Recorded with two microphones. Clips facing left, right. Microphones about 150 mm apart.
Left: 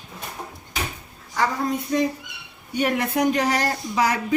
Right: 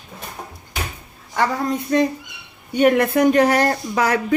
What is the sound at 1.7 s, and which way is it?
Speech, 65° right (ahead or behind).